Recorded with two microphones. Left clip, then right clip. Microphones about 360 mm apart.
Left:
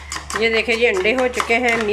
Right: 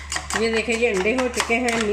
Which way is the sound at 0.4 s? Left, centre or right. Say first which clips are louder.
Left 6 dB; left.